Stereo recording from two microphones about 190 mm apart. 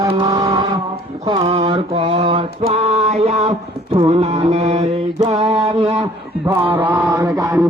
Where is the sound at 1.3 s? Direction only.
30° right (ahead or behind).